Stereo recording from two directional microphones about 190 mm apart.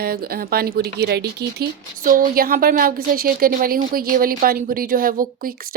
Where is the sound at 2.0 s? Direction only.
45° right (ahead or behind).